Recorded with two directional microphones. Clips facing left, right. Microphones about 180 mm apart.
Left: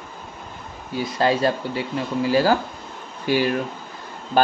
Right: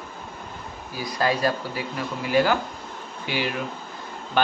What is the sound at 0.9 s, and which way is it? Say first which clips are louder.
Speech: left 4 dB; 25° left (ahead or behind).